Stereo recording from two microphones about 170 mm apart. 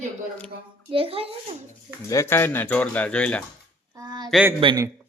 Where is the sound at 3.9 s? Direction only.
25° right (ahead or behind).